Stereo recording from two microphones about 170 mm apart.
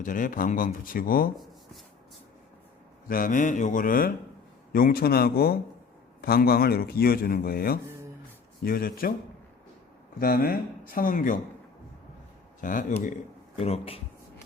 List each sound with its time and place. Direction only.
0.0 s speech: 50° left (ahead or behind)
3.1 s speech: 55° left (ahead or behind)
10.2 s speech: 60° left (ahead or behind)
12.6 s speech: 50° left (ahead or behind)
13.6 s speech: 35° left (ahead or behind)